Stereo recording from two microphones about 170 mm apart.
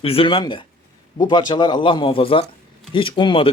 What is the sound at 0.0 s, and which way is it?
A man's voice, 35° left (ahead or behind).